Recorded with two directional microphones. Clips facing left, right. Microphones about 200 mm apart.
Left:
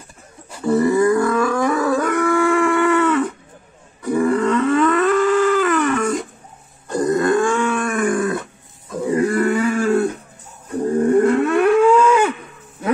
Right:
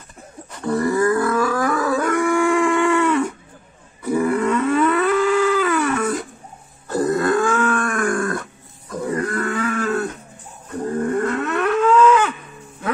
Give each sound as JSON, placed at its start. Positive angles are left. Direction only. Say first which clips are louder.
{"t": 0.5, "sound": "wild animals", "louder": "left 4 dB", "side_deg": 5}
{"t": 4.0, "sound": "a sound", "louder": "left 2 dB", "side_deg": -5}
{"t": 9.2, "sound": "wild animals", "louder": "left 9 dB", "side_deg": 10}
{"t": 10.7, "sound": "wild animals", "louder": "left 6 dB", "side_deg": 30}
{"t": 11.4, "sound": "livestock", "louder": "left 5 dB", "side_deg": 10}